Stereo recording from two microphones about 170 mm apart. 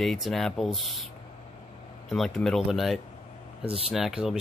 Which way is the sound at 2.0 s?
Centre (ahead or behind).